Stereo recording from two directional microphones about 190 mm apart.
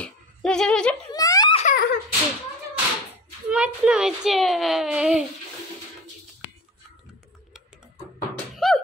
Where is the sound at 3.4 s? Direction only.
5° right (ahead or behind).